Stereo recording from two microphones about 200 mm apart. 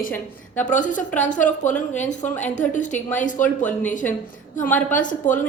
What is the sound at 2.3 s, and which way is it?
Speech, 10° left (ahead or behind).